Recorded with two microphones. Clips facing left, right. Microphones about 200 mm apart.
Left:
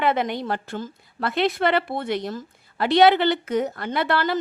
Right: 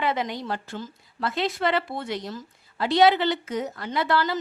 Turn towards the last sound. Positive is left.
turn(degrees=60)  # may be behind; listen again after turning